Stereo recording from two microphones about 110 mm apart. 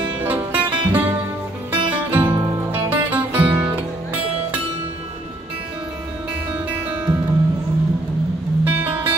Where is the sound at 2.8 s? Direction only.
15° right (ahead or behind).